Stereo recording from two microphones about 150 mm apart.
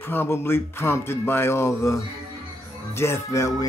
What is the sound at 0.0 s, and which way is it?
Speech, 15° left (ahead or behind).